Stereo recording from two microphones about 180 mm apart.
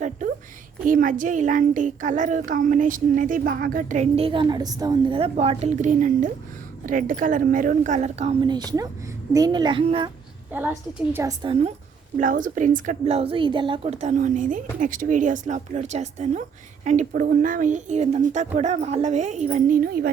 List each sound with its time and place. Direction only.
0.0 s a sound: 45° right (ahead or behind)
0.9 s a child's voice: 50° right (ahead or behind); by 10.1 s 25° right (ahead or behind)
10.5 s a woman's voice: 10° right (ahead or behind)
12.1 s speech: 45° right (ahead or behind)